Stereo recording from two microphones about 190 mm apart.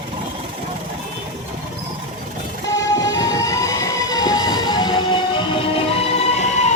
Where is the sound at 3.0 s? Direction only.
20° left (ahead or behind).